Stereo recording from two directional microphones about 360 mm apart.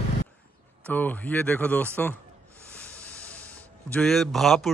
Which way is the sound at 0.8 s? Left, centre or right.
Centre.